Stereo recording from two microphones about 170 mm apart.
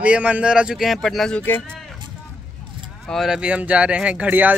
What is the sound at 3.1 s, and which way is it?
Speech, centre (ahead or behind).